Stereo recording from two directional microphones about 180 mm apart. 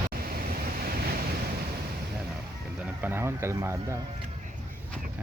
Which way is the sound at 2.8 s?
10° right (ahead or behind).